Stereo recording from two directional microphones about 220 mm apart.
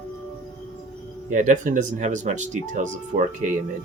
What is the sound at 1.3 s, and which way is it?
Speech, 35° right (ahead or behind).